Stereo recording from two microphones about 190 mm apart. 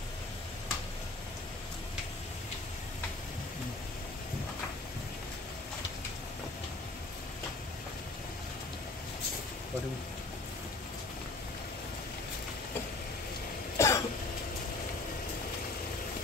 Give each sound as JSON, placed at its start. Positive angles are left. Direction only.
{"t": 13.7, "sound": "cough", "side_deg": 15}